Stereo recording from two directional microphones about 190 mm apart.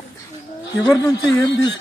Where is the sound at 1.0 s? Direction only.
20° left (ahead or behind).